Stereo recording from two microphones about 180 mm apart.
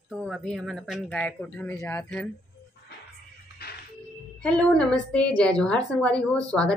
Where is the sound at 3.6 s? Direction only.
60° left (ahead or behind).